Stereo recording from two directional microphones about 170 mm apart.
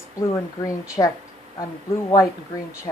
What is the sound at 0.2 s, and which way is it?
Speech, 20° left (ahead or behind).